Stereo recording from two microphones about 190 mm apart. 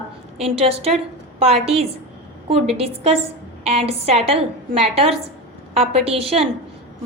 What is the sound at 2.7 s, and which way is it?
A woman's voice, 30° right (ahead or behind).